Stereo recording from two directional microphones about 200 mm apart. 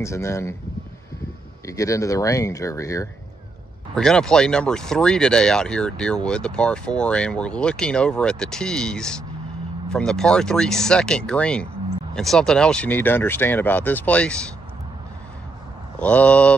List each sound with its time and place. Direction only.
0.0 s speech: 15° left (ahead or behind)
1.7 s speech: 15° left (ahead or behind)
3.9 s speech: 5° left (ahead or behind)
16.0 s speech: 5° left (ahead or behind)